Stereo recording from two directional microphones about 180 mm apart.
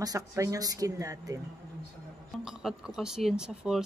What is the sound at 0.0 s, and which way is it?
A woman's voice, 20° right (ahead or behind).